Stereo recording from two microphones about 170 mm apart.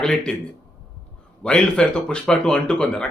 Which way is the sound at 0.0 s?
5° left (ahead or behind).